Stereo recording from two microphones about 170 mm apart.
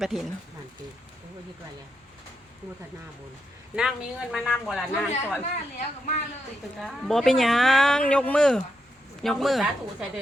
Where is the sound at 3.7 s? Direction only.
5° right (ahead or behind).